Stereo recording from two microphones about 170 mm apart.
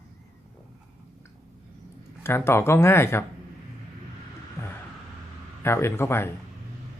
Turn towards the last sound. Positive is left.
turn(degrees=15)  # may be behind; listen again after turning